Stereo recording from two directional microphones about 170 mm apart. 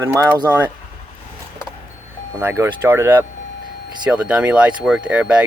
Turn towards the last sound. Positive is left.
turn(degrees=-10)  # may be behind; listen again after turning